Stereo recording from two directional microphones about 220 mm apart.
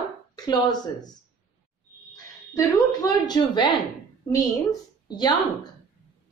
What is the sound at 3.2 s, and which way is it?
Speech, 20° left (ahead or behind).